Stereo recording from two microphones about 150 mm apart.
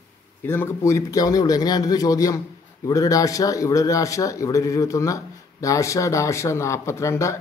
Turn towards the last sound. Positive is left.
turn(degrees=20)  # may be behind; listen again after turning